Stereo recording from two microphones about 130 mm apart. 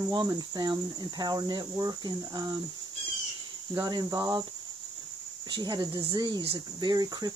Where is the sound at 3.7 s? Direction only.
35° right (ahead or behind).